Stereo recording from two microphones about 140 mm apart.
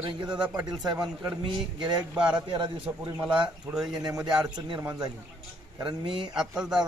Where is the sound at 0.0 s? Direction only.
35° right (ahead or behind).